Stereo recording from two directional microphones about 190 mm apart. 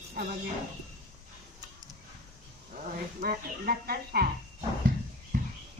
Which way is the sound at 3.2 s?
55° right (ahead or behind).